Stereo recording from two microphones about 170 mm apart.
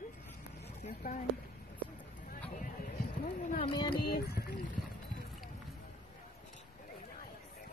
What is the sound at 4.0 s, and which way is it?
Speech, 70° left (ahead or behind).